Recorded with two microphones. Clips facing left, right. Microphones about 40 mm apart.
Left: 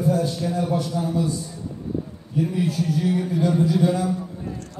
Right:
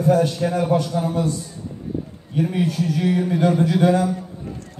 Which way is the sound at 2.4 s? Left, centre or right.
Right.